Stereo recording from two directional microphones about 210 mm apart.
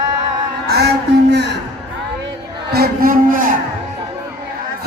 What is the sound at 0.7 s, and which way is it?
Music, 50° right (ahead or behind).